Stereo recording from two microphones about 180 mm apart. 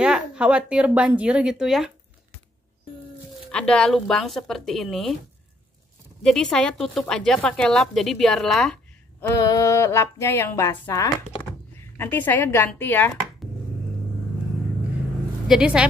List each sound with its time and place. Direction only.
0.0 s speech: 5° right (ahead or behind)
3.5 s speech: 5° left (ahead or behind)
6.2 s speech: centre (ahead or behind)
9.3 s speech: 20° left (ahead or behind)
15.4 s speech: 5° right (ahead or behind)